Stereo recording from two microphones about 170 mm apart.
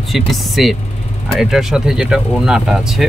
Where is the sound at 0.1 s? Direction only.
Centre (ahead or behind).